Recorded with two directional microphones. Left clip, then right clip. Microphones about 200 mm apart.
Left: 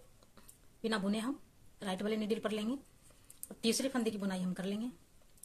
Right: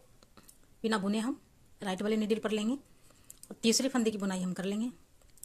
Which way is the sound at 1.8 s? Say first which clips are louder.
Right 4 dB; 30° right (ahead or behind).